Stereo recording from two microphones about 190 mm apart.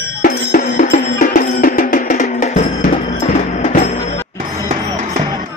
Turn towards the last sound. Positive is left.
turn(degrees=40)  # may be behind; listen again after turning